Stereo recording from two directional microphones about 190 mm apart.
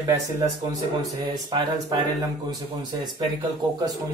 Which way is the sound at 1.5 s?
20° right (ahead or behind).